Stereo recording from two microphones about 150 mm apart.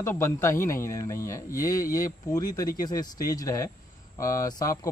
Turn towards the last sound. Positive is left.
turn(degrees=25)  # may be behind; listen again after turning